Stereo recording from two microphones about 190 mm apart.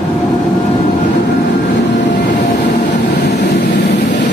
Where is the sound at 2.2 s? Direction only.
40° left (ahead or behind).